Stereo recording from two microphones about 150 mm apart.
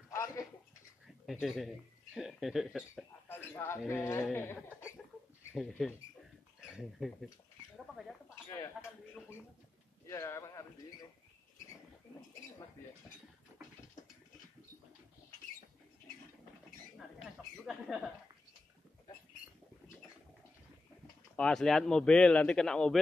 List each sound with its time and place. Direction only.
0.1 s a sound: 20° left (ahead or behind)
1.0 s speech: centre (ahead or behind)
3.5 s speech: 15° left (ahead or behind)
5.5 s speech: centre (ahead or behind)
10.0 s speech: 20° left (ahead or behind)
17.6 s speech: centre (ahead or behind)
21.4 s speech: 5° left (ahead or behind)